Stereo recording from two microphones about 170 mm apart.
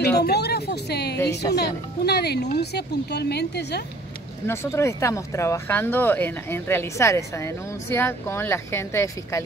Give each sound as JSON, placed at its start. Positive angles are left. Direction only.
{"t": 0.2, "sound": "speech", "side_deg": 70}
{"t": 4.5, "sound": "speech", "side_deg": 15}